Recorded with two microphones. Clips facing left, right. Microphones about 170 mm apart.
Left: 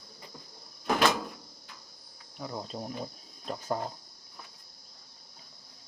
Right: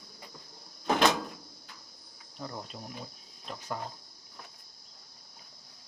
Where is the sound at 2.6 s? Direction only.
35° left (ahead or behind).